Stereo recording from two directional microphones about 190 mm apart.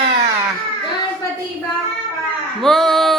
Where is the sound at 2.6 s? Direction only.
Centre (ahead or behind).